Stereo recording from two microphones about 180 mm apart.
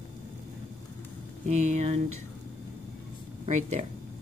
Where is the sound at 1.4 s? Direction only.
40° right (ahead or behind).